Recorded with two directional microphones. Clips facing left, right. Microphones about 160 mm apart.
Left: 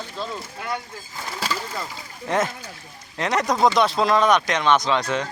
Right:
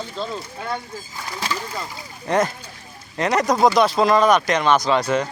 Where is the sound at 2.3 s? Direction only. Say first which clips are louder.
Right 3 dB; centre (ahead or behind).